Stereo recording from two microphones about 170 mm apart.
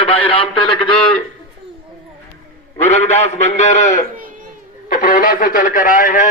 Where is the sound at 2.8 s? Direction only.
40° left (ahead or behind).